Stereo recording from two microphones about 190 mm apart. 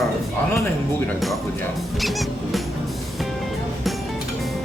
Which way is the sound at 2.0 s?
Centre (ahead or behind).